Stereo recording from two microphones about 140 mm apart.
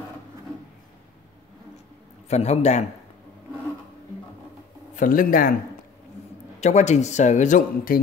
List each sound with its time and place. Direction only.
2.2 s a man's voice: 50° left (ahead or behind)
4.9 s a man's voice: 80° left
6.6 s speech: 55° left (ahead or behind); by 8.0 s 80° left